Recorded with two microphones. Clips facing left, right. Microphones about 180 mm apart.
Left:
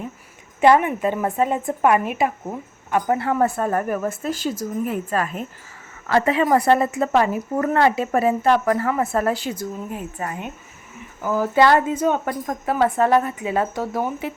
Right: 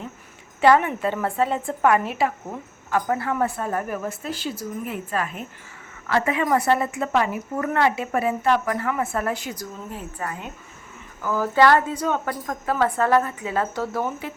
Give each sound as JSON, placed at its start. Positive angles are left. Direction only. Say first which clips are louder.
{"t": 0.6, "sound": "speech", "louder": "left 2 dB", "side_deg": 15}
{"t": 3.4, "sound": "speech", "louder": "left 4 dB", "side_deg": 50}
{"t": 9.9, "sound": "speech", "louder": "left 3 dB", "side_deg": 20}